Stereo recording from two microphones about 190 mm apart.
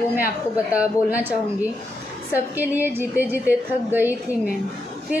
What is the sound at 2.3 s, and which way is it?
A woman's voice, 10° right (ahead or behind).